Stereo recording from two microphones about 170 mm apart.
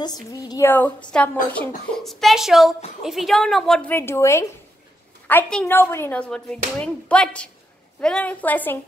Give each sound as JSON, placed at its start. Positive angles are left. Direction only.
{"t": 0.0, "sound": "a woman's voice", "side_deg": 25}